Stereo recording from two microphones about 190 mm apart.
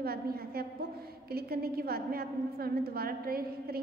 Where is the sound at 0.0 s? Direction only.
55° right (ahead or behind).